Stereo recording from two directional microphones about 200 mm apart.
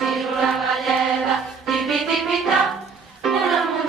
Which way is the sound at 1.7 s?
Centre (ahead or behind).